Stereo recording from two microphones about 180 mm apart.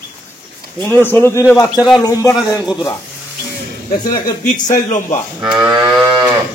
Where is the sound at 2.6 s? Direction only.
5° right (ahead or behind).